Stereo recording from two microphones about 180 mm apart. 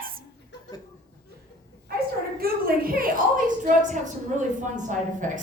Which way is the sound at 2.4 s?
55° right (ahead or behind).